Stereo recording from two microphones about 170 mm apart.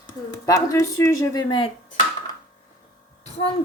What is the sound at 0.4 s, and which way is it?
Speech, 20° left (ahead or behind).